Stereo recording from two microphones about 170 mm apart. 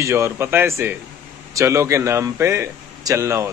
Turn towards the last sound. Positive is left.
turn(degrees=-15)  # may be behind; listen again after turning